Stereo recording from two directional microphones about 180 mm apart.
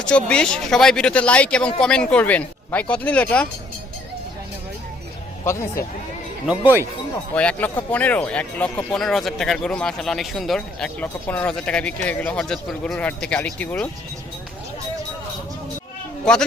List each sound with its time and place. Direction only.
0.0 s speech: 5° left (ahead or behind)
5.5 s speech: 15° left (ahead or behind)
7.3 s speech: 10° left (ahead or behind)